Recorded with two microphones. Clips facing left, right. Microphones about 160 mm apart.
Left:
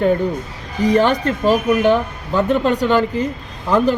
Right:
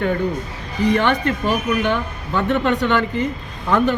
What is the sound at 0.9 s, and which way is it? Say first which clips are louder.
Speech: left 3 dB; 40° left (ahead or behind).